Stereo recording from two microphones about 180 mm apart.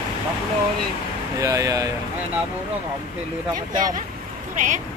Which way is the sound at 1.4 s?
20° right (ahead or behind).